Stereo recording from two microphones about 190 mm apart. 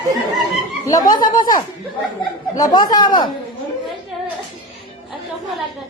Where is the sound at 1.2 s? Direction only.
25° left (ahead or behind).